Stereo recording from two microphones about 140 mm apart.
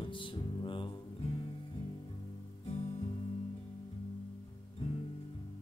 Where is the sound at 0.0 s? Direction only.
35° left (ahead or behind).